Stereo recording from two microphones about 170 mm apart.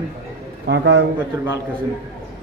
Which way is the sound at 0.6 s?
90° right.